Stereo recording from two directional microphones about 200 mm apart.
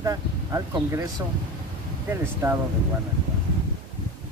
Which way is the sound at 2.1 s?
10° right (ahead or behind).